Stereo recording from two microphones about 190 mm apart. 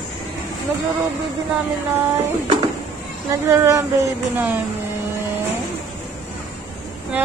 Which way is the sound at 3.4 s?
15° right (ahead or behind).